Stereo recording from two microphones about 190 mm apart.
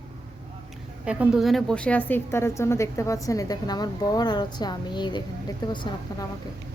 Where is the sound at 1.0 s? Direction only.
5° right (ahead or behind); by 6.2 s 25° left (ahead or behind).